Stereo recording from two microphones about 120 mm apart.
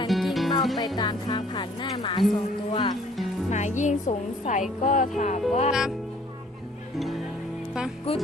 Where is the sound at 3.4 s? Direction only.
75° left (ahead or behind).